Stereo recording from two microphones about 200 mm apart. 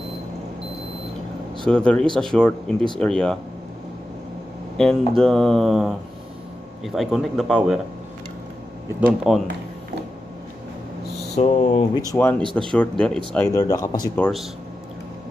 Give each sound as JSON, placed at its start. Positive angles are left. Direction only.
{"t": 1.6, "sound": "speech", "side_deg": 5}
{"t": 4.7, "sound": "speech", "side_deg": 5}
{"t": 9.0, "sound": "speech", "side_deg": -5}
{"t": 11.3, "sound": "speech", "side_deg": 35}
{"t": 12.1, "sound": "speech", "side_deg": 10}